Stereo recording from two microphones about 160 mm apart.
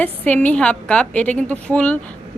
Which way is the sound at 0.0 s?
10° left (ahead or behind).